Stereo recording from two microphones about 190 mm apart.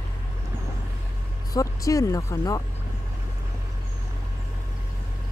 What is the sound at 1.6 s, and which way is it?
Speech, 15° left (ahead or behind).